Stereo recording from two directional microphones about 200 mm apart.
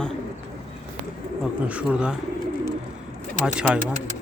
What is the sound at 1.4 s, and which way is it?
Speech, 5° right (ahead or behind).